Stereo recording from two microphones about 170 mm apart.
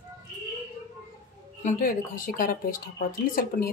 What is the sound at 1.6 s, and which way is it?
Speech, 55° left (ahead or behind).